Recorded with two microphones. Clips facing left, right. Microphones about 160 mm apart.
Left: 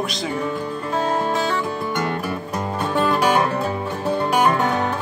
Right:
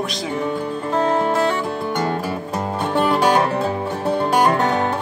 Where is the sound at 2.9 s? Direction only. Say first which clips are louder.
Right 2 dB; 25° right (ahead or behind).